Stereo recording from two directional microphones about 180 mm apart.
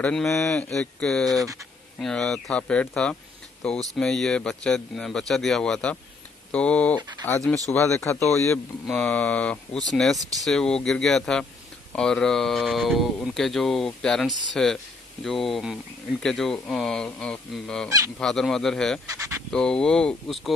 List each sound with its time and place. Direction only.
0.0 s speech: 5° left (ahead or behind)
1.4 s speech: 15° right (ahead or behind)
2.0 s speech: 5° left (ahead or behind)
7.7 s speech: 15° left (ahead or behind)
17.8 s speech: 15° right (ahead or behind)
18.2 s speech: 5° left (ahead or behind)